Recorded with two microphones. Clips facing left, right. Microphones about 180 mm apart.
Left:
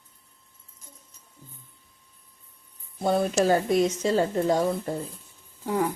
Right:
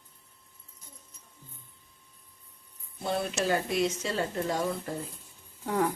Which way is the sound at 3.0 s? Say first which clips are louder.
Left 7 dB; 45° left (ahead or behind).